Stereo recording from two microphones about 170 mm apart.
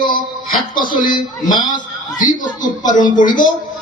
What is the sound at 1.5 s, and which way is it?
Speech, 25° left (ahead or behind).